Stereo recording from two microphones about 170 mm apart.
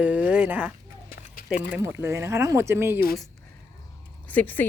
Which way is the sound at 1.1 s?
60° left (ahead or behind).